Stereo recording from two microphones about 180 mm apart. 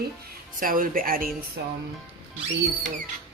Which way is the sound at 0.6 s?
50° right (ahead or behind).